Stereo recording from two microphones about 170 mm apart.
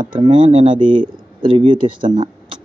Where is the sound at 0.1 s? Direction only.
30° right (ahead or behind).